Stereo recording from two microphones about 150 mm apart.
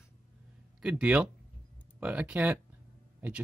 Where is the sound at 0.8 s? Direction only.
5° right (ahead or behind).